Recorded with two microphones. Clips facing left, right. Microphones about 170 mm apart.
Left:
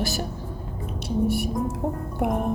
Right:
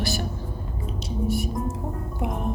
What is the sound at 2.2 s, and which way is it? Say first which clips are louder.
Speech: left 5 dB; 60° left (ahead or behind).